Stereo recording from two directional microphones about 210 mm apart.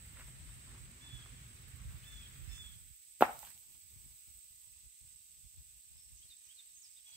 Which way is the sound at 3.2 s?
5° right (ahead or behind).